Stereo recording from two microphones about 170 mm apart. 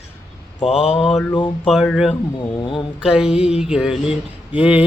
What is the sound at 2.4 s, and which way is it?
Speech, 30° left (ahead or behind).